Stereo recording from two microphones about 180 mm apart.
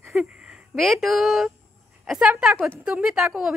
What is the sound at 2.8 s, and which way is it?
Speech, 5° right (ahead or behind).